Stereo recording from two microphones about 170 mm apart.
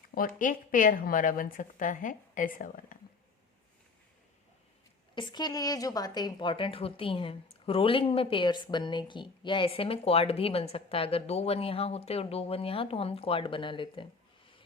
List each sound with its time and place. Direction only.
0.1 s speech: 55° left (ahead or behind)
5.1 s a woman's voice: 25° left (ahead or behind)